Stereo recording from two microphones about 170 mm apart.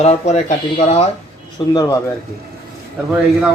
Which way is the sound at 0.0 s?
40° left (ahead or behind).